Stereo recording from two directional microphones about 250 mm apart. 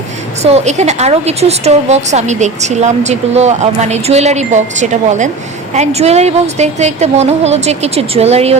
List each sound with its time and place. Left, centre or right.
0.4 s a woman's voice: right